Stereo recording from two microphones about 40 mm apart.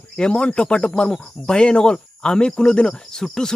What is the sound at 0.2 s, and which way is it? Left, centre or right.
Speech, left.